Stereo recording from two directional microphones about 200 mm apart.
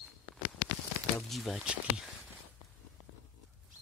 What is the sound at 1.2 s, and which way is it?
Speech, centre (ahead or behind).